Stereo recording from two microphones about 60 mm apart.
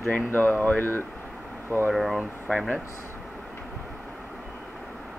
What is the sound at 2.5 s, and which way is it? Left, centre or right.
Speech, centre.